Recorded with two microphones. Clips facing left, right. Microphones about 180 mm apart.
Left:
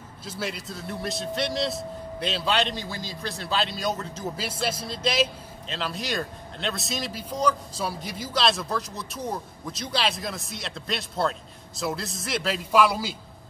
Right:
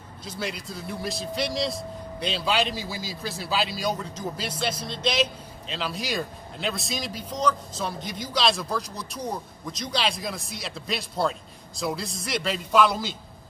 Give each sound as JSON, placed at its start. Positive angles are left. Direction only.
{"t": 0.2, "sound": "a man's voice", "side_deg": 5}